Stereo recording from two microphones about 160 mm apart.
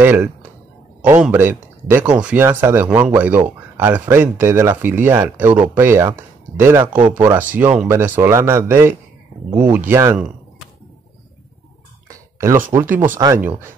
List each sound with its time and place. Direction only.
0.0 s speech: 15° right (ahead or behind)
12.1 s a sound: 20° right (ahead or behind)
12.7 s speech: 15° right (ahead or behind)